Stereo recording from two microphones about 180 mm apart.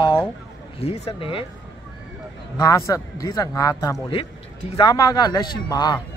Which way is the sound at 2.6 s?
20° left (ahead or behind).